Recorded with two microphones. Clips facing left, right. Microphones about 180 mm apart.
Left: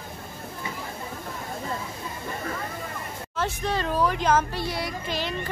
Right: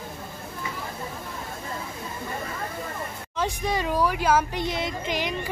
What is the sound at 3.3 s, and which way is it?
Speech, 15° right (ahead or behind).